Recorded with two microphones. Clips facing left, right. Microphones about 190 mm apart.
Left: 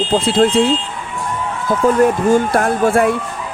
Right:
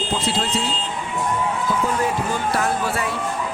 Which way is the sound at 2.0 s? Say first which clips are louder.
Left 10 dB; 50° left (ahead or behind).